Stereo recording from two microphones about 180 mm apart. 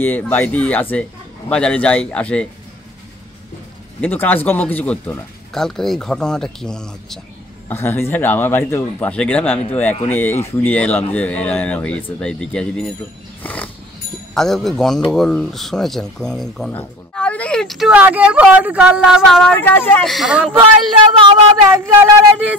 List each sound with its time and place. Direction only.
0.0 s a man's voice: 10° left (ahead or behind)
4.0 s a man's voice: 10° left (ahead or behind)
13.4 s roaring cats: 10° left (ahead or behind)
14.3 s speech: centre (ahead or behind)
21.3 s speech: 20° right (ahead or behind)